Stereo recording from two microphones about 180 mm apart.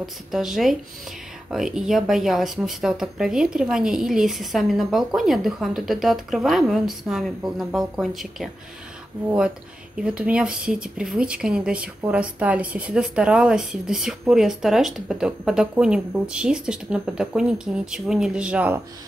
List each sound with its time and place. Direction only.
0.0 s speech: centre (ahead or behind)
9.9 s speech: 5° right (ahead or behind)